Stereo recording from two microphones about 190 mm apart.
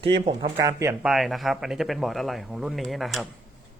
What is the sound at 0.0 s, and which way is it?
Speech, 30° right (ahead or behind).